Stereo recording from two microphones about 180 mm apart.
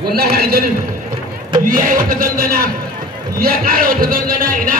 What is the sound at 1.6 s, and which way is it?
Speech, 50° right (ahead or behind).